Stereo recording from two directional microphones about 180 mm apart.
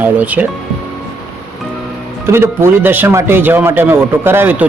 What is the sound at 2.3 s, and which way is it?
A man's voice, 15° right (ahead or behind).